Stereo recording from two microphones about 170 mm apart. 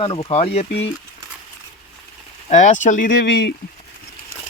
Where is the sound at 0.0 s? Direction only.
35° left (ahead or behind).